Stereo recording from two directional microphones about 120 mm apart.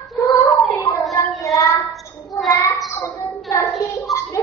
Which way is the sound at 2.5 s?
25° left (ahead or behind).